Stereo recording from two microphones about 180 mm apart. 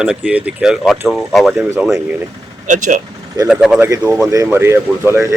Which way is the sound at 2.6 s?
45° right (ahead or behind).